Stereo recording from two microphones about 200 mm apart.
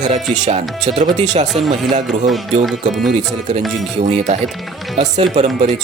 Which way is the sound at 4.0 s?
35° right (ahead or behind).